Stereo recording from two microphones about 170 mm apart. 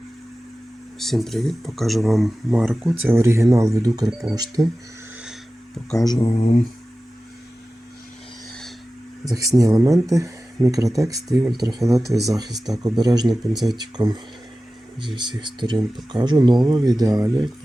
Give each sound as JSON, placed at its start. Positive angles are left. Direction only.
{"t": 0.9, "sound": "speech", "side_deg": 0}
{"t": 2.8, "sound": "speech", "side_deg": -15}
{"t": 6.0, "sound": "speech", "side_deg": 25}
{"t": 6.3, "sound": "speech", "side_deg": 40}
{"t": 9.3, "sound": "speech", "side_deg": -20}
{"t": 13.5, "sound": "speech", "side_deg": 0}
{"t": 13.7, "sound": "speech", "side_deg": -25}